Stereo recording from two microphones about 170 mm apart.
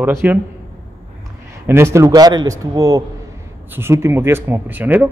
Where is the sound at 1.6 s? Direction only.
15° right (ahead or behind).